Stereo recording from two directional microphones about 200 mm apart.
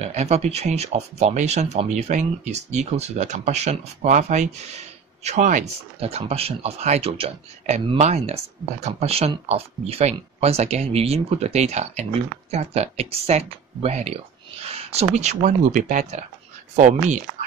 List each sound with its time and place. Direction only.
0.0 s speech: 35° right (ahead or behind)